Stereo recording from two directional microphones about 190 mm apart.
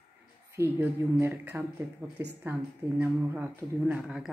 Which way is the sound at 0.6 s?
10° right (ahead or behind).